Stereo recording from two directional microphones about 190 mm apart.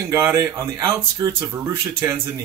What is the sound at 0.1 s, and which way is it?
Speech, 15° right (ahead or behind).